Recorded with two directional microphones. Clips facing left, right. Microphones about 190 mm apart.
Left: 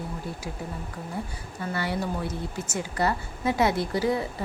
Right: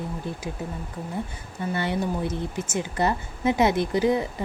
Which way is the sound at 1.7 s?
20° right (ahead or behind).